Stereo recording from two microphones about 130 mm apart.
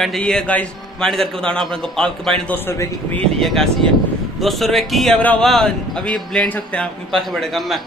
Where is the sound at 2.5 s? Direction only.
20° left (ahead or behind).